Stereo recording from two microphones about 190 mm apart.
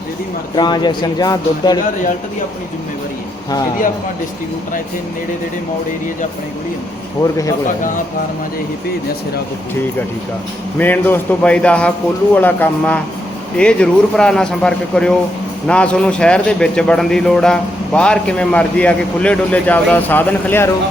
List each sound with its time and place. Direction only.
0.5 s speech: 20° left (ahead or behind)
10.8 s a man's voice: 10° left (ahead or behind)